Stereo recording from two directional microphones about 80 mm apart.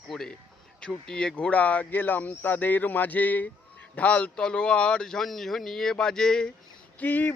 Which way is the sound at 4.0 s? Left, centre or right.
Centre.